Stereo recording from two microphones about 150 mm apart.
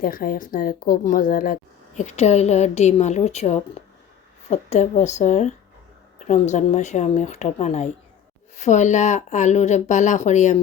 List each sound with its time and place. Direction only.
0.0 s speech: 70° left (ahead or behind)
2.0 s speech: 50° left (ahead or behind)